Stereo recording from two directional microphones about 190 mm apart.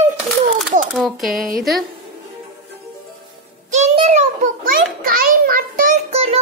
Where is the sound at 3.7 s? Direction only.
35° right (ahead or behind).